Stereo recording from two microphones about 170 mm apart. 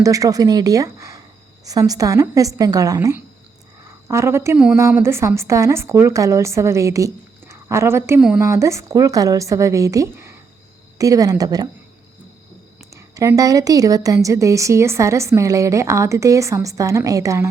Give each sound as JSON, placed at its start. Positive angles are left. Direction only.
{"t": 0.0, "sound": "a woman's voice", "side_deg": -20}
{"t": 4.5, "sound": "a woman's voice", "side_deg": -5}
{"t": 12.9, "sound": "a woman's voice", "side_deg": -20}